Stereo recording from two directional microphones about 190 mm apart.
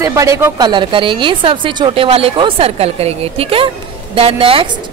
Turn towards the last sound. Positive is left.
turn(degrees=-30)  # may be behind; listen again after turning